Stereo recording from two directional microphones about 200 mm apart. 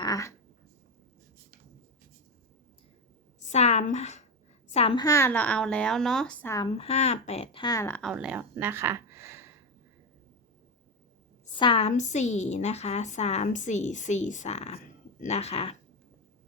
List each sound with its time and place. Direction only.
0.0 s a sound: 15° left (ahead or behind)
3.4 s a sound: 35° left (ahead or behind)
5.0 s speech: 15° left (ahead or behind)
6.7 s speech: 30° left (ahead or behind); by 8.0 s 15° left (ahead or behind)
8.0 s speech: 5° right (ahead or behind)
11.5 s a woman's voice: 25° left (ahead or behind)